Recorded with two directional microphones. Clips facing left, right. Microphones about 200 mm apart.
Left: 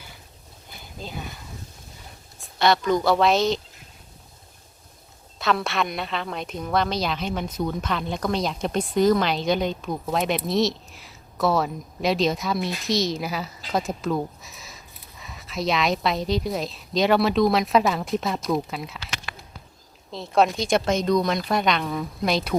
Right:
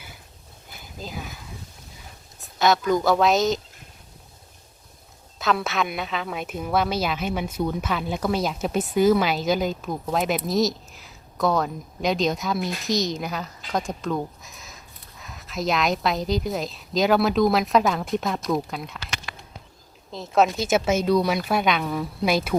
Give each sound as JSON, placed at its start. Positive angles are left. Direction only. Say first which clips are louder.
{"t": 0.9, "sound": "a sound", "louder": "even", "side_deg": -5}
{"t": 2.6, "sound": "a woman's voice", "louder": "even", "side_deg": 0}
{"t": 5.4, "sound": "a woman's voice", "louder": "even", "side_deg": 0}
{"t": 20.1, "sound": "a woman's voice", "louder": "even", "side_deg": 0}